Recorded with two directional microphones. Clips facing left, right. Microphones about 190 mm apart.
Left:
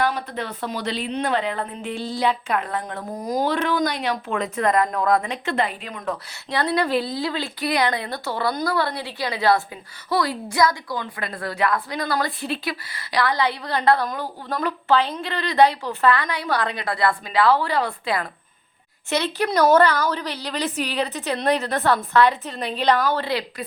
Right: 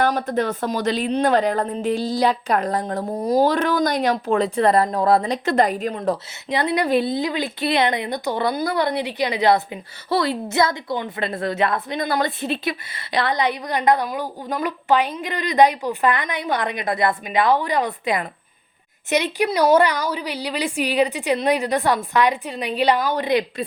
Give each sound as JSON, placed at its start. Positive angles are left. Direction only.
{"t": 0.0, "sound": "speech", "side_deg": -45}
{"t": 6.5, "sound": "a woman's voice", "side_deg": -20}